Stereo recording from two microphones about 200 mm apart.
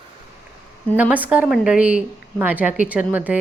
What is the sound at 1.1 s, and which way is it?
A woman's voice, 10° right (ahead or behind).